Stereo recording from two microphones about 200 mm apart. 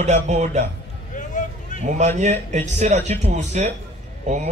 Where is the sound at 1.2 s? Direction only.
40° left (ahead or behind).